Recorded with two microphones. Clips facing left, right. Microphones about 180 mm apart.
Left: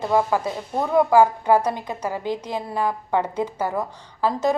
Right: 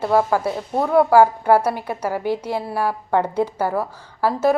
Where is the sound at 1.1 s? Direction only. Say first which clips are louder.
Right 2 dB; 10° right (ahead or behind).